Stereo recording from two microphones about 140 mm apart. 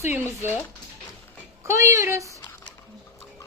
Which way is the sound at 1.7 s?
20° right (ahead or behind).